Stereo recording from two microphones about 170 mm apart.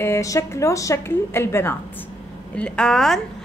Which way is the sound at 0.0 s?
15° left (ahead or behind).